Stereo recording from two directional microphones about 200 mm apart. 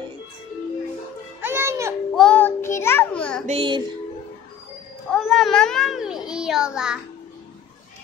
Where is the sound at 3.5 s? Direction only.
25° right (ahead or behind).